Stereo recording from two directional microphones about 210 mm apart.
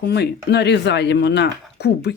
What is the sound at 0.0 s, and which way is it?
Speech, 50° left (ahead or behind).